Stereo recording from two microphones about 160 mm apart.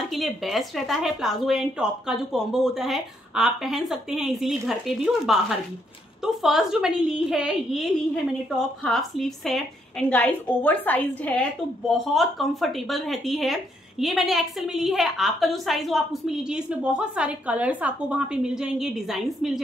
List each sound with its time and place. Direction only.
0.1 s a woman's voice: centre (ahead or behind)
12.0 s speech: centre (ahead or behind)